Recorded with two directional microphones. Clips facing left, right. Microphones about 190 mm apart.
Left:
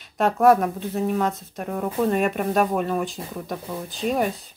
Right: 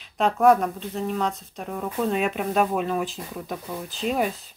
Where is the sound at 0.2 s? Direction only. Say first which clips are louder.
Left 1 dB; 5° left (ahead or behind).